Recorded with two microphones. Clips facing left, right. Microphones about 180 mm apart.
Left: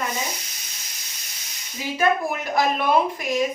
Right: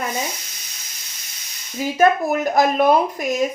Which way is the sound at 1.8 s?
45° right (ahead or behind).